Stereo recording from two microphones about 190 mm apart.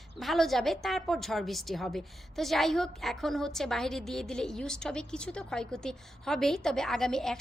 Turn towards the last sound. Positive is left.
turn(degrees=0)  # may be behind; listen again after turning